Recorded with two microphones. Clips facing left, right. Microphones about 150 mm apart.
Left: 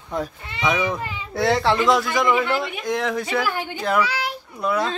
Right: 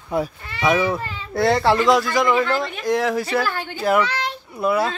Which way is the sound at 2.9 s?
Centre (ahead or behind).